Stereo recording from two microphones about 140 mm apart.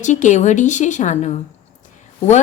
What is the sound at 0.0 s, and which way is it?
Speech, 60° left (ahead or behind).